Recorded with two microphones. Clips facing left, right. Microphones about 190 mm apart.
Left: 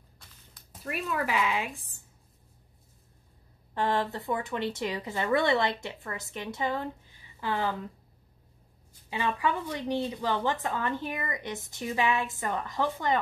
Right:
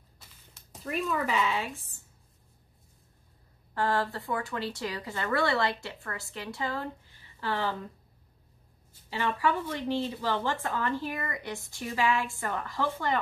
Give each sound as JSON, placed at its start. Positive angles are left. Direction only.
{"t": 0.2, "sound": "quack", "side_deg": -5}
{"t": 1.1, "sound": "speech", "side_deg": 10}
{"t": 3.7, "sound": "a woman's voice", "side_deg": 20}
{"t": 9.1, "sound": "speech", "side_deg": 15}